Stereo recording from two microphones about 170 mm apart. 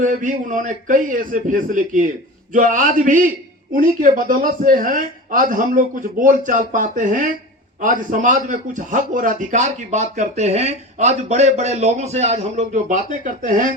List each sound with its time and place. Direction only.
0.0 s a man's voice: 50° right (ahead or behind)